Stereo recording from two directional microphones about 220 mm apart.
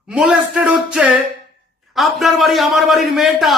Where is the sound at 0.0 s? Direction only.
5° right (ahead or behind).